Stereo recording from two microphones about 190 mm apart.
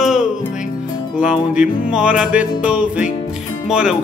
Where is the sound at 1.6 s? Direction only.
5° right (ahead or behind).